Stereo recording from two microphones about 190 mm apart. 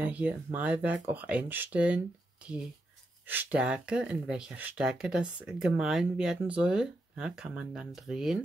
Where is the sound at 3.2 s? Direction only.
10° right (ahead or behind).